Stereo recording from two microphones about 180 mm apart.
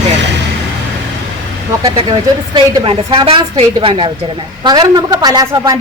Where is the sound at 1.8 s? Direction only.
25° right (ahead or behind).